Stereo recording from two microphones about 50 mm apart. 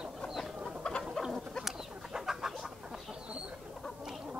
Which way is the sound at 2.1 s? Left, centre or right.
Centre.